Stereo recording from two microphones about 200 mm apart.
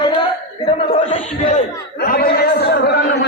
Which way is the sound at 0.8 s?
30° left (ahead or behind).